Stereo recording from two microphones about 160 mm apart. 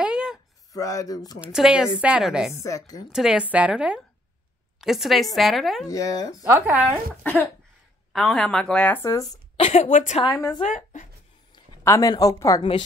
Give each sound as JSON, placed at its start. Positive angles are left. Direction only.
{"t": 0.0, "sound": "a sound", "side_deg": -5}
{"t": 0.7, "sound": "a woman's voice", "side_deg": 20}
{"t": 1.4, "sound": "a woman's voice", "side_deg": -5}
{"t": 2.5, "sound": "a woman's voice", "side_deg": 20}
{"t": 3.1, "sound": "a woman's voice", "side_deg": -5}
{"t": 5.9, "sound": "a woman's voice", "side_deg": 20}
{"t": 6.4, "sound": "a woman's voice", "side_deg": -10}
{"t": 8.1, "sound": "a woman's voice", "side_deg": 0}
{"t": 9.6, "sound": "a woman's voice", "side_deg": 35}
{"t": 9.8, "sound": "speech", "side_deg": 50}
{"t": 10.2, "sound": "a woman's voice", "side_deg": 25}
{"t": 10.6, "sound": "speech", "side_deg": 50}
{"t": 11.8, "sound": "a woman's voice", "side_deg": 20}